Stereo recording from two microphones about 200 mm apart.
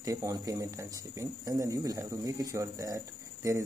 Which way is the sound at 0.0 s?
15° right (ahead or behind).